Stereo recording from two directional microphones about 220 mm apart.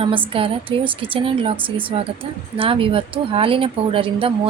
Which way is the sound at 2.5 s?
25° right (ahead or behind).